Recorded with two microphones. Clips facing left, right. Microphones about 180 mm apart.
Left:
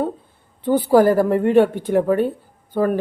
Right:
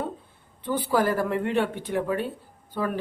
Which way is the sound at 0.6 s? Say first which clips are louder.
Left 10 dB; 45° left (ahead or behind).